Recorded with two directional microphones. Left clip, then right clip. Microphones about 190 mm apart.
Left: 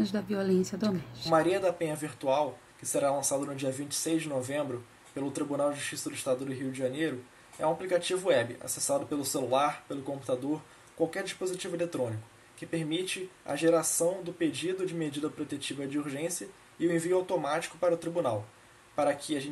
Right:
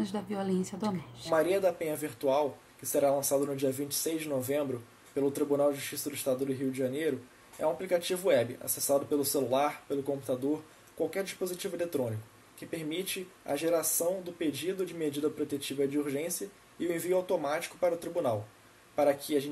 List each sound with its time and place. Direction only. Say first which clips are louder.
0.0 s speech: left 3 dB; 10° right (ahead or behind)
11.1 s speech: even; centre (ahead or behind)